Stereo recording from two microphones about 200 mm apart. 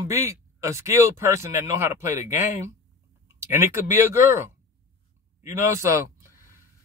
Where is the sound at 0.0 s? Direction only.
15° right (ahead or behind).